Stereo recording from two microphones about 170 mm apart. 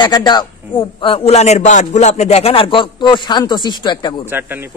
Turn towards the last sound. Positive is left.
turn(degrees=-10)  # may be behind; listen again after turning